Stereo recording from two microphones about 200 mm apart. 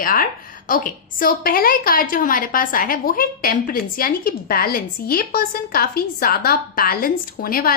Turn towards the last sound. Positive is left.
turn(degrees=45)  # may be behind; listen again after turning